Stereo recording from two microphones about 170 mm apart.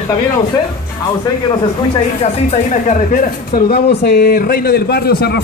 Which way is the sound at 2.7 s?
50° left (ahead or behind).